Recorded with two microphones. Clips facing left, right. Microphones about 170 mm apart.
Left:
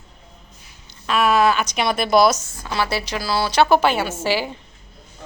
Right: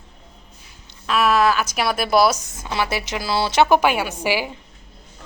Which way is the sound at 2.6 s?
20° right (ahead or behind).